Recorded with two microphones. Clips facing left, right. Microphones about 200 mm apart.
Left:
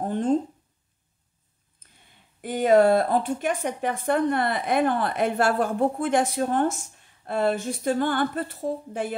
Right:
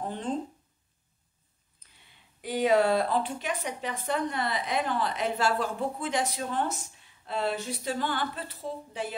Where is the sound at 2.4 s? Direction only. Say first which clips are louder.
Left 6 dB; 50° left (ahead or behind).